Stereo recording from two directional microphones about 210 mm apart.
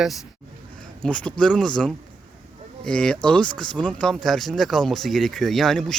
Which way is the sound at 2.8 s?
5° left (ahead or behind).